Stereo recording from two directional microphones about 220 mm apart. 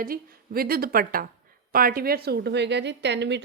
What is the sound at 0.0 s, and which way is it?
A woman's voice, 40° right (ahead or behind).